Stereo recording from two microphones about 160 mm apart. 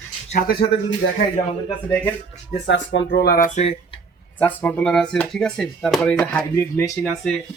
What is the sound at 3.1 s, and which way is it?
Speech, 80° left.